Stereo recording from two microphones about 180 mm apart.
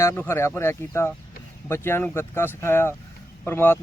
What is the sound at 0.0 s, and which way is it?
Speech, 15° left (ahead or behind).